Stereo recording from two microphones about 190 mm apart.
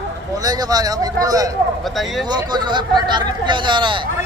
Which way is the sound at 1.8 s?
Centre (ahead or behind).